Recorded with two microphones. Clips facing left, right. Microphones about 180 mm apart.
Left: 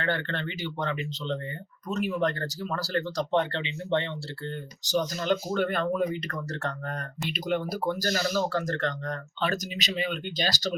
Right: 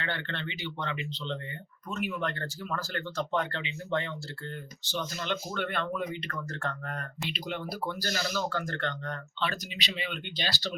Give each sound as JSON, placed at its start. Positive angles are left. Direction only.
{"t": 0.0, "sound": "speech", "side_deg": 45}
{"t": 4.8, "sound": "speech", "side_deg": 40}